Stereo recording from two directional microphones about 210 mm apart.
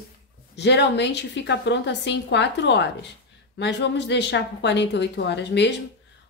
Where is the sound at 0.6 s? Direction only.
55° left (ahead or behind).